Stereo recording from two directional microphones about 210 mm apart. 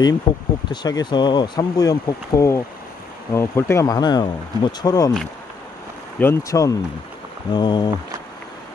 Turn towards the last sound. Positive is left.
turn(degrees=20)  # may be behind; listen again after turning